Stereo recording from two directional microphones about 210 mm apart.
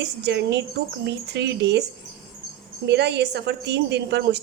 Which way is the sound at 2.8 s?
55° right (ahead or behind).